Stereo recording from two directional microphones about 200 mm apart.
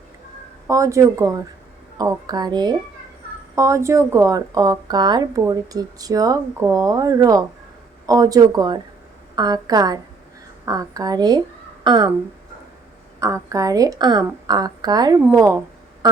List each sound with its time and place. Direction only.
0.7 s a woman's voice: 15° right (ahead or behind)
13.1 s a woman's voice: 15° right (ahead or behind)